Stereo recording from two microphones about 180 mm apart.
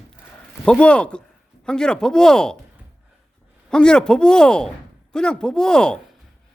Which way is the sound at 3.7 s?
5° left (ahead or behind).